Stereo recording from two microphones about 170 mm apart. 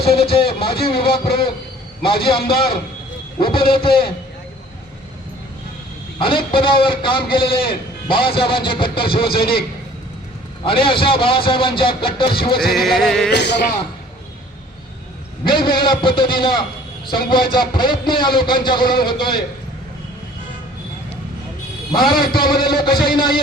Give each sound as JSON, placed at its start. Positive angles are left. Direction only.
{"t": 0.0, "sound": "speech", "side_deg": 35}
{"t": 2.4, "sound": "a man's voice", "side_deg": 65}
{"t": 3.3, "sound": "speech", "side_deg": 30}
{"t": 6.1, "sound": "speech", "side_deg": 30}
{"t": 10.7, "sound": "speech", "side_deg": 30}
{"t": 12.5, "sound": "a sound", "side_deg": 0}
{"t": 13.3, "sound": "a man's voice", "side_deg": 85}
{"t": 15.4, "sound": "a man's voice", "side_deg": 30}
{"t": 22.0, "sound": "a man's voice", "side_deg": 60}
{"t": 22.8, "sound": "a man's voice", "side_deg": 30}